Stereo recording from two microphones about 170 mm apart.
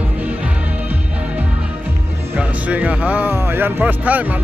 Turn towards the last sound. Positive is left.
turn(degrees=-10)  # may be behind; listen again after turning